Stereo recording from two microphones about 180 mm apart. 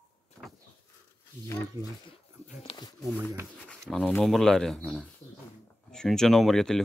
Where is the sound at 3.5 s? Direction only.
5° left (ahead or behind).